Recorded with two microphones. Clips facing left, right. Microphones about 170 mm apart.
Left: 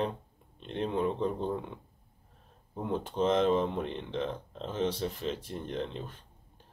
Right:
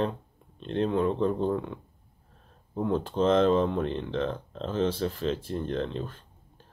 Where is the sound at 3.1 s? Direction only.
15° left (ahead or behind).